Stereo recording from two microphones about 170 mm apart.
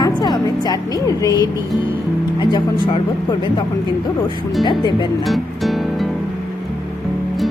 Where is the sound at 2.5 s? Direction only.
30° left (ahead or behind).